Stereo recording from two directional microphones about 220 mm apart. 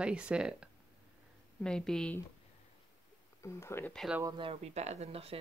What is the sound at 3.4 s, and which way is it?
Speech, 10° left (ahead or behind).